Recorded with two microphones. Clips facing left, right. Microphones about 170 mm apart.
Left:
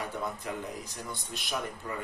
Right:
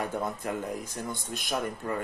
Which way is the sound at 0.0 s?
50° right (ahead or behind).